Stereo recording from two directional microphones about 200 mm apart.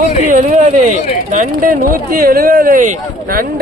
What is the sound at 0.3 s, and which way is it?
Speech, 40° right (ahead or behind).